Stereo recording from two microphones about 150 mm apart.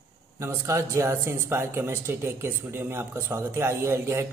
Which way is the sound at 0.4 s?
20° right (ahead or behind).